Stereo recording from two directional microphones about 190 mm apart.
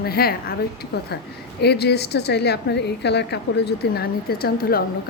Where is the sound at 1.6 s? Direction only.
60° left (ahead or behind).